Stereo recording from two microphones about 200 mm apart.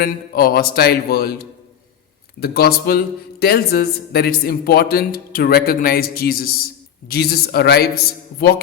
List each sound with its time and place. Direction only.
0.0 s speech: 50° left (ahead or behind)